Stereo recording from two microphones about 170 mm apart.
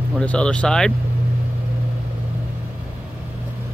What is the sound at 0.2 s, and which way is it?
Speech, 5° left (ahead or behind).